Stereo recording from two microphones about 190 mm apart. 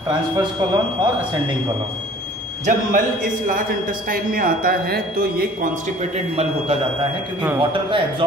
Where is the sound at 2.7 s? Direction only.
40° right (ahead or behind).